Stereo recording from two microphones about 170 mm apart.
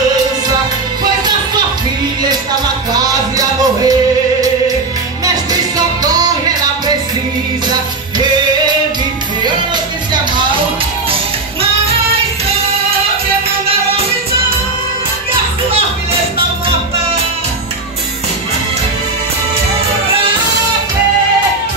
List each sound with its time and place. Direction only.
2.9 s music: 20° right (ahead or behind)
5.2 s music: 20° right (ahead or behind)